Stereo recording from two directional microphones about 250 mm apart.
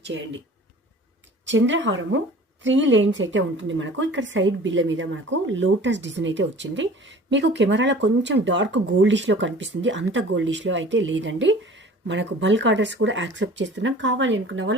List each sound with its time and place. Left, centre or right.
0.1 s a woman's voice: right
1.5 s a woman's voice: right